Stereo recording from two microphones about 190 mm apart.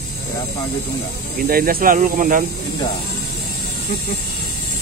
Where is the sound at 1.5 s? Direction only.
50° right (ahead or behind).